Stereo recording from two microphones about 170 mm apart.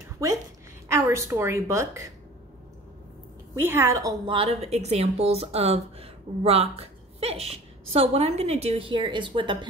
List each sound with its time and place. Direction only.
0.2 s a woman's voice: 20° right (ahead or behind)
3.5 s a woman's voice: 15° right (ahead or behind)
4.3 s speech: 35° right (ahead or behind)